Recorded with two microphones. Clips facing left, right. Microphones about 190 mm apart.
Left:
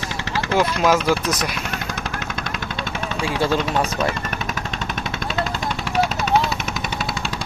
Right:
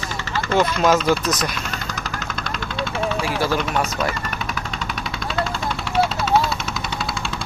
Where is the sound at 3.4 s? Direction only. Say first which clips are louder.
Left 3 dB; 20° left (ahead or behind).